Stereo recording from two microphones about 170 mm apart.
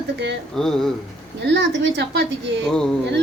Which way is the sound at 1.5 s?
90° right.